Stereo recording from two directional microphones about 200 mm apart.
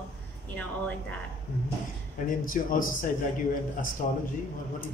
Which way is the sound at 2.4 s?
45° left (ahead or behind).